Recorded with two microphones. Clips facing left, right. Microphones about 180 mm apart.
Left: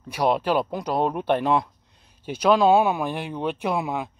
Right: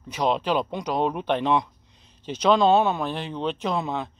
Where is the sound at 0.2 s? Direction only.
10° left (ahead or behind).